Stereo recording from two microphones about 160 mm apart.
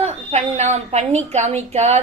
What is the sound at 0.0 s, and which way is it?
A woman's voice, 45° right (ahead or behind).